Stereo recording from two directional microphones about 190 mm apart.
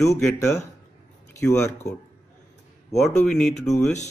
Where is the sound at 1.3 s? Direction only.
15° left (ahead or behind).